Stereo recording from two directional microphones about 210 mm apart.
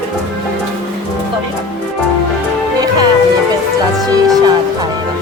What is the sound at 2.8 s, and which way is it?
Music, 20° right (ahead or behind).